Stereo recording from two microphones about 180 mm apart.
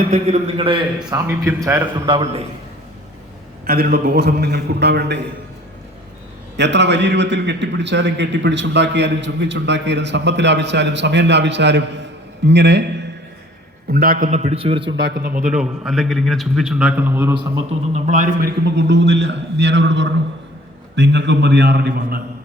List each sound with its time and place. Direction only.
0.1 s a man's voice: 40° right (ahead or behind)
1.1 s a man's voice: 15° right (ahead or behind)
2.0 s a man's voice: 25° right (ahead or behind)
3.7 s a man's voice: 60° right (ahead or behind)
6.6 s a man's voice: 75° right (ahead or behind)
13.8 s a man's voice: 55° right (ahead or behind); by 14.9 s 30° right (ahead or behind)
14.9 s a man's voice: 60° right (ahead or behind)
15.4 s a man's voice: 5° right (ahead or behind)
17.9 s a man's voice: 40° right (ahead or behind); by 22.2 s 70° right (ahead or behind)